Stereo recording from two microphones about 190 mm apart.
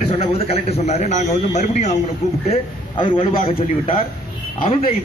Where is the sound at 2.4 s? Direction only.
25° left (ahead or behind).